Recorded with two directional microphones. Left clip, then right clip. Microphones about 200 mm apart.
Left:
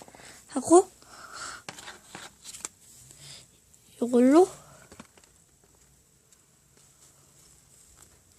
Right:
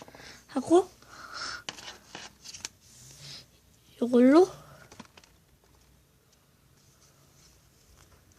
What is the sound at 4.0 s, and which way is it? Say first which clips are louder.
Speech: even; 10° left (ahead or behind).